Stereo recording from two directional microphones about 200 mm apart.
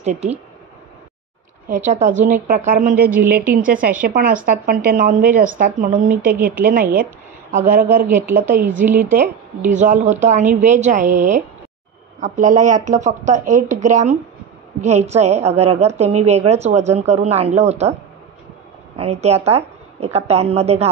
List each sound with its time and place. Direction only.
0.0 s a woman's voice: 35° right (ahead or behind)
1.7 s a woman's voice: 40° right (ahead or behind)
6.2 s a woman's voice: 10° right (ahead or behind)
6.6 s a woman's voice: 45° right (ahead or behind)
8.1 s a woman's voice: 10° right (ahead or behind)
8.5 s a woman's voice: 40° right (ahead or behind)
18.9 s a woman's voice: 30° right (ahead or behind)